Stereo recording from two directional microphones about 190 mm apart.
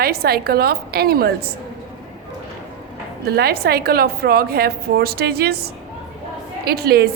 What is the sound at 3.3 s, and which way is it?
A woman's voice, 55° right (ahead or behind).